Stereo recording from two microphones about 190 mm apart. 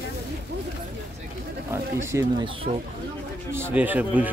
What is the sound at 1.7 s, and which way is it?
Speech, 15° right (ahead or behind).